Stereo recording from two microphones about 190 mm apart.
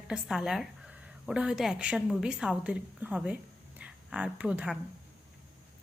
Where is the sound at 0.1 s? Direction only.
Centre (ahead or behind).